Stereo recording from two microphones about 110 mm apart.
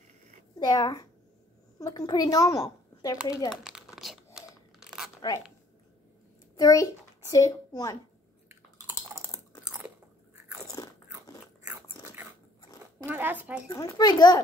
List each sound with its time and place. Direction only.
0.6 s a child's voice: 40° left (ahead or behind)
3.6 s crumpling: 5° right (ahead or behind)
4.7 s a sound: 5° right (ahead or behind)
6.5 s a child's voice: 35° left (ahead or behind)
10.8 s crunch: 35° left (ahead or behind)
13.1 s speech: 15° right (ahead or behind)
13.7 s a child's voice: 35° left (ahead or behind)